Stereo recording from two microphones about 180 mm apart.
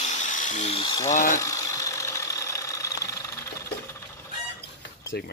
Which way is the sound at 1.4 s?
15° left (ahead or behind).